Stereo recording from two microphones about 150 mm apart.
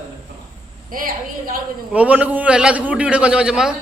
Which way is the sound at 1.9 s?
10° right (ahead or behind).